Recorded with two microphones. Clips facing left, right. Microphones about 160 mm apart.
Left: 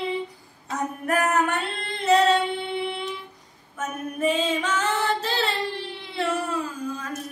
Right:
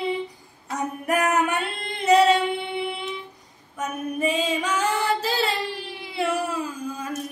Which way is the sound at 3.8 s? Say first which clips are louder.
Even; 10° right (ahead or behind).